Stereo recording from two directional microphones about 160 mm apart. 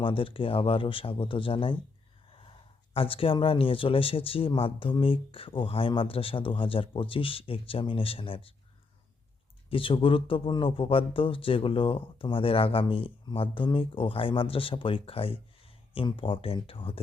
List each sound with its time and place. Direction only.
0.0 s speech: 35° left (ahead or behind)
9.6 s speech: 35° left (ahead or behind)